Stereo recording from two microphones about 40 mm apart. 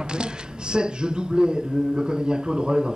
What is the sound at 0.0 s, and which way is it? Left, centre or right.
Speech, right.